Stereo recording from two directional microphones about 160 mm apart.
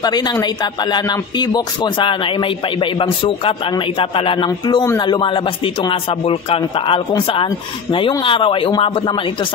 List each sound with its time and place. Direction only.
0.0 s a man's voice: 25° left (ahead or behind)